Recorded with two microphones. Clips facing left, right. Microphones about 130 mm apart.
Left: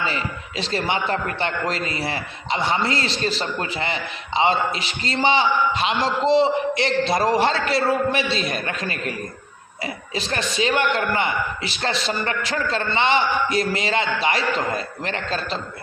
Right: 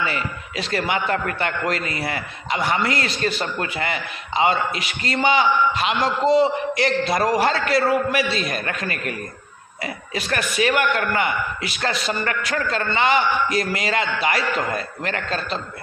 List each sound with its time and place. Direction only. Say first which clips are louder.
0.0 s a man's voice: even; 30° left (ahead or behind)